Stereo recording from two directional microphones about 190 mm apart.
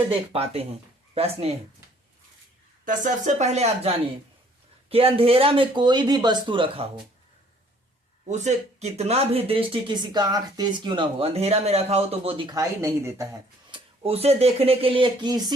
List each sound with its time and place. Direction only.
0.1 s speech: 30° right (ahead or behind)
2.8 s speech: 45° right (ahead or behind); by 7.0 s 25° right (ahead or behind)
8.3 s speech: 35° right (ahead or behind); by 13.2 s 15° right (ahead or behind)
13.7 s speech: 30° right (ahead or behind)